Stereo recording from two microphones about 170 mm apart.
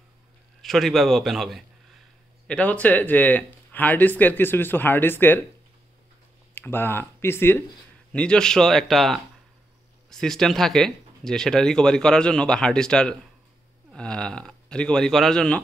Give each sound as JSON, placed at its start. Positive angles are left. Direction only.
{"t": 0.6, "sound": "speech", "side_deg": 0}
{"t": 6.5, "sound": "speech", "side_deg": 15}